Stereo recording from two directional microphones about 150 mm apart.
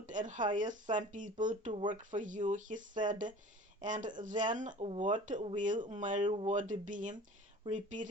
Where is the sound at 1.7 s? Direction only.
35° right (ahead or behind).